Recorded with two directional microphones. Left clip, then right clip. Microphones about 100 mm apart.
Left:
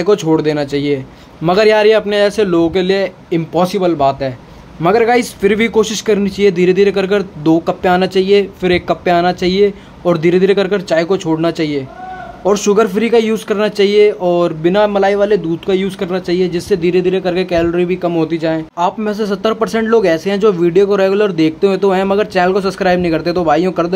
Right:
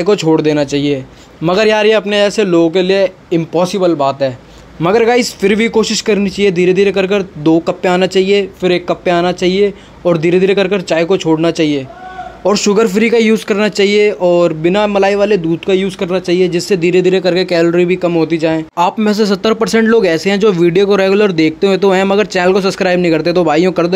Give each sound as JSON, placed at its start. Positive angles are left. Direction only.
{"t": 0.0, "sound": "a man's voice", "side_deg": -40}
{"t": 4.8, "sound": "a man's voice", "side_deg": -45}
{"t": 15.6, "sound": "speech", "side_deg": -30}
{"t": 19.0, "sound": "speech", "side_deg": -65}